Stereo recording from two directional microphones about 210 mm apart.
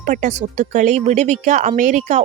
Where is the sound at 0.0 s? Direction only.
35° right (ahead or behind).